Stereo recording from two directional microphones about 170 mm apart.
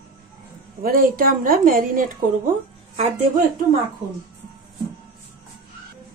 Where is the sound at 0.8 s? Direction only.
55° right (ahead or behind).